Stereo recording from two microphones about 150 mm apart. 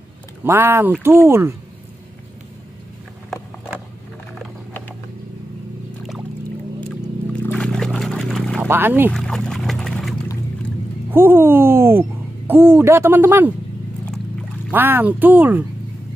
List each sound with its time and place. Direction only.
0.4 s speech: 15° right (ahead or behind)
7.5 s a sound: 5° left (ahead or behind)
8.5 s speech: 15° right (ahead or behind)
9.1 s a sound: 5° left (ahead or behind)
11.1 s speech: 15° right (ahead or behind)
14.7 s speech: 15° right (ahead or behind)